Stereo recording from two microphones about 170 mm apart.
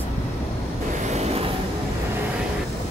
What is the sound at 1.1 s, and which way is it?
Vehicle, 40° right (ahead or behind).